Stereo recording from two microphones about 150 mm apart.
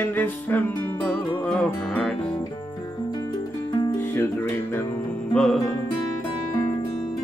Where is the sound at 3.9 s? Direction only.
15° left (ahead or behind).